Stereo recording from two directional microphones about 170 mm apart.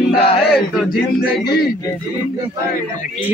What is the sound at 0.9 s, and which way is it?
Speech, 65° left (ahead or behind).